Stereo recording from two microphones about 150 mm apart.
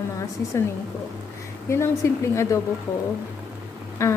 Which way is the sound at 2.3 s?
20° left (ahead or behind).